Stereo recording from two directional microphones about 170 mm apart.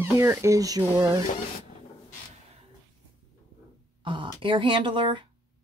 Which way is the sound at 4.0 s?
30° right (ahead or behind).